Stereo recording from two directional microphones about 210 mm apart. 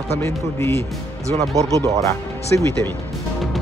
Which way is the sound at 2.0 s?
15° left (ahead or behind).